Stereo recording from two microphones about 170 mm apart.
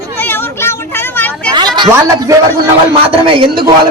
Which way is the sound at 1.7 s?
25° right (ahead or behind).